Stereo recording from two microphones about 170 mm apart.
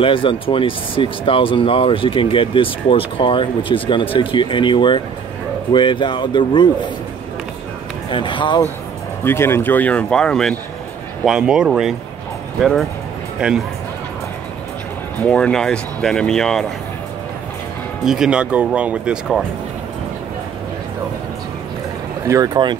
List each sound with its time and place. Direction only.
0.0 s speech: 30° left (ahead or behind)
8.1 s speech: 30° left (ahead or behind)
9.2 s speech: 15° left (ahead or behind); by 11.9 s 5° right (ahead or behind)
13.4 s speech: 5° right (ahead or behind)
15.2 s speech: 5° left (ahead or behind)
18.0 s speech: 5° right (ahead or behind)
22.3 s speech: 20° right (ahead or behind)